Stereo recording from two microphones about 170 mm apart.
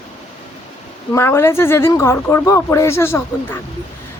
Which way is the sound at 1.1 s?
15° left (ahead or behind).